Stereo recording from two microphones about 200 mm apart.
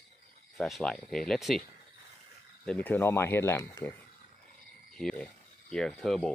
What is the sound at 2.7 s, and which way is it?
Speech, 10° left (ahead or behind).